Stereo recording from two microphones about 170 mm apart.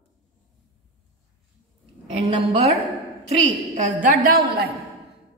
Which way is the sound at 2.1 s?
30° right (ahead or behind).